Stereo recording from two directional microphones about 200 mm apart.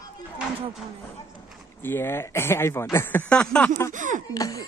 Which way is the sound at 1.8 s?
10° left (ahead or behind).